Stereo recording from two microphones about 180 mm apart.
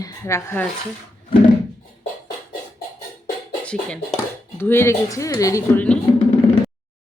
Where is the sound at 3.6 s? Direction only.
5° left (ahead or behind).